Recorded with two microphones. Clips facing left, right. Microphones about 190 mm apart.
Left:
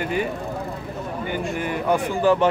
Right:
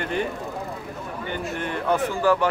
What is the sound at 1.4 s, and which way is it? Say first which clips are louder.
Speech: left 2 dB; 5° left (ahead or behind).